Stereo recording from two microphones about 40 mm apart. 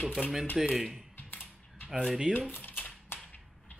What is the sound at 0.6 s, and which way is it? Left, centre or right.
Speech, centre.